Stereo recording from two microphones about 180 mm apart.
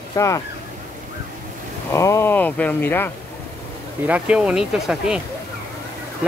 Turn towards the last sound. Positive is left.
turn(degrees=-5)  # may be behind; listen again after turning